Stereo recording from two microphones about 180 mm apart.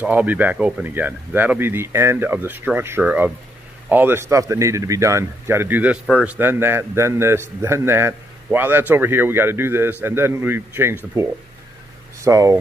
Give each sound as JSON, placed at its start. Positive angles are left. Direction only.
{"t": 0.0, "sound": "speech", "side_deg": -10}